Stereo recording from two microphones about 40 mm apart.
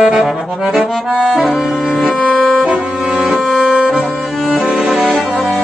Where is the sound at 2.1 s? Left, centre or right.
Centre.